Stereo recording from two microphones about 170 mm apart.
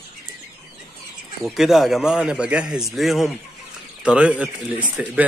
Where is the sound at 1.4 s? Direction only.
Centre (ahead or behind).